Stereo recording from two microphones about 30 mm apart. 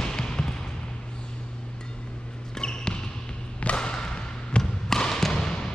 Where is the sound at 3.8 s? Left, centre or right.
Left.